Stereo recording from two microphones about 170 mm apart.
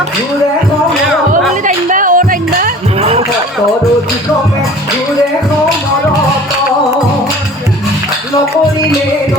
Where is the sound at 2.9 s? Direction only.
35° right (ahead or behind).